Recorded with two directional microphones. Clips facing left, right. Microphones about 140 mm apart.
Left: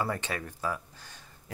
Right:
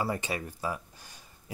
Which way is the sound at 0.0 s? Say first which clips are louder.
Right 1 dB; 10° right (ahead or behind).